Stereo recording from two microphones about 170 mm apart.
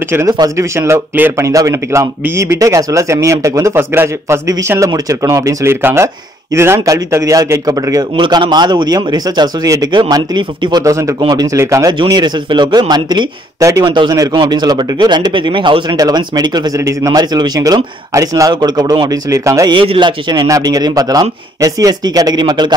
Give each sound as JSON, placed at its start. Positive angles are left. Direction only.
{"t": 0.1, "sound": "speech", "side_deg": -20}
{"t": 12.0, "sound": "speech", "side_deg": -25}